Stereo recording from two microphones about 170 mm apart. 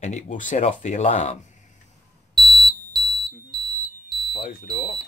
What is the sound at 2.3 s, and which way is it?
Smoke detector, centre (ahead or behind).